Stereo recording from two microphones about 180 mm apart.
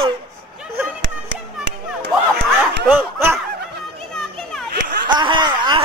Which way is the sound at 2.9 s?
10° right (ahead or behind).